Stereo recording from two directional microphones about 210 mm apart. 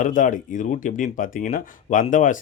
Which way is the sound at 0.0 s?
40° left (ahead or behind).